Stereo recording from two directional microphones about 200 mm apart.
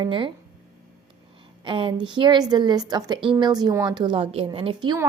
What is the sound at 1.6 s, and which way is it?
A woman's voice, 25° right (ahead or behind).